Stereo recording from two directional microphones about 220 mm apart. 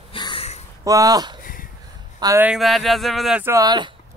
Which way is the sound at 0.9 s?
15° right (ahead or behind).